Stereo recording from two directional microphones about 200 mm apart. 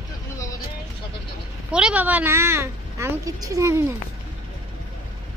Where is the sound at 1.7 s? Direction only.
5° right (ahead or behind).